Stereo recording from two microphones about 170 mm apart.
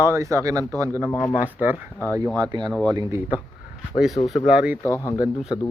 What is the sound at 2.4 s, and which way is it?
Speech, 25° right (ahead or behind).